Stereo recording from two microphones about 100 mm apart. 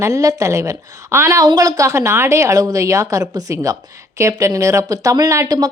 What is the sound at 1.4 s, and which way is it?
A woman's voice, 40° right (ahead or behind).